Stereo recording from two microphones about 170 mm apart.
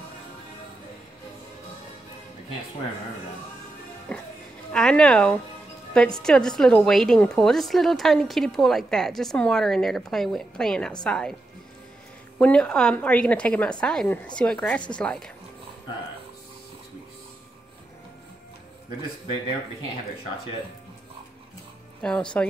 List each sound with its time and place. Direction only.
4.1 s a woman's voice: 5° left (ahead or behind)
12.4 s a woman's voice: 5° left (ahead or behind)
22.0 s a woman's voice: 5° left (ahead or behind)